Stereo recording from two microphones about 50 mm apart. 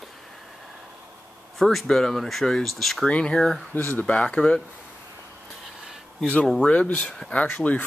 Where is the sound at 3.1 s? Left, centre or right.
Left.